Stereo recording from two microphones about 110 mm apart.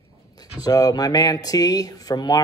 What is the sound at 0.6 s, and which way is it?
Speech, 35° left (ahead or behind).